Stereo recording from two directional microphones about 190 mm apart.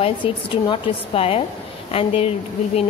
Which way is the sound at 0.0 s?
25° left (ahead or behind).